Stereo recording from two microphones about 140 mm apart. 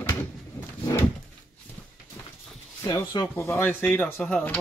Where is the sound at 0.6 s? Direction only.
10° left (ahead or behind).